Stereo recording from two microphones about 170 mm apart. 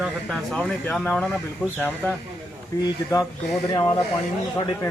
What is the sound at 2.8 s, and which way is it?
Speech, 20° left (ahead or behind).